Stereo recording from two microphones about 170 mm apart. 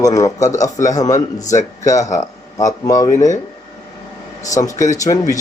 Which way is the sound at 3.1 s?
45° left (ahead or behind).